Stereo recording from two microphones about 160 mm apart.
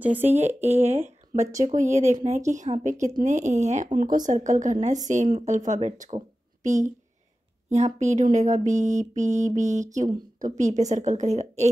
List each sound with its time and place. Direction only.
0.0 s speech: 10° right (ahead or behind)
0.6 s a woman's voice: 45° right (ahead or behind)